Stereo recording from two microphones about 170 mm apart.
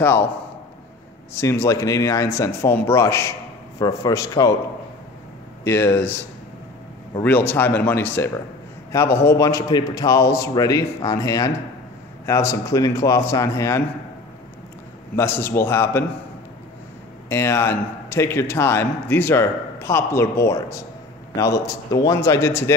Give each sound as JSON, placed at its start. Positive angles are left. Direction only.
{"t": 0.0, "sound": "a man's voice", "side_deg": 15}
{"t": 1.3, "sound": "a man's voice", "side_deg": 15}
{"t": 5.6, "sound": "a man's voice", "side_deg": 15}
{"t": 15.1, "sound": "a man's voice", "side_deg": 15}
{"t": 17.3, "sound": "a man's voice", "side_deg": 15}